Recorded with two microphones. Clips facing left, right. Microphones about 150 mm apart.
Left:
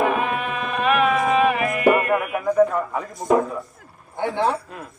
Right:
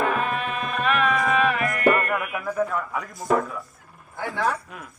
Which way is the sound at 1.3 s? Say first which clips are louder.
Left 4 dB; 15° left (ahead or behind).